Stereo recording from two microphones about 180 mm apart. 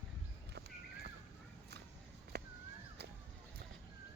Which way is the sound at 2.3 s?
65° right (ahead or behind).